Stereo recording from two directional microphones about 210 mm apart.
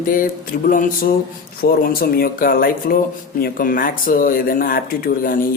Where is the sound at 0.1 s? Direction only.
40° left (ahead or behind).